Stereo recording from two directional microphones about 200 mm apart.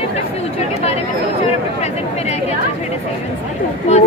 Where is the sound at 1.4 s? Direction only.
35° left (ahead or behind).